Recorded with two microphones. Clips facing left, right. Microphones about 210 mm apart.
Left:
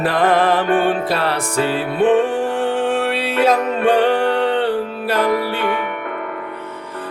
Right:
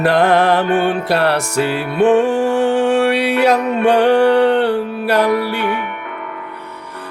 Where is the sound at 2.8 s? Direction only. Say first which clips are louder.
Right 5 dB; 70° right (ahead or behind).